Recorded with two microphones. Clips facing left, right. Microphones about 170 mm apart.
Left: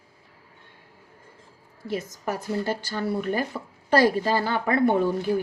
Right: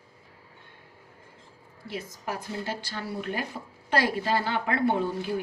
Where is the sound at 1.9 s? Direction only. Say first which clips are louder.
Left 5 dB; 45° left (ahead or behind).